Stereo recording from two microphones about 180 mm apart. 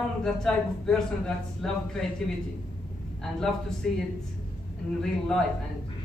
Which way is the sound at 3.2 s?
Centre (ahead or behind).